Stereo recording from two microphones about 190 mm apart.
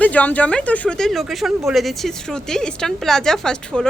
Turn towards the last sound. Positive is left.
turn(degrees=5)  # may be behind; listen again after turning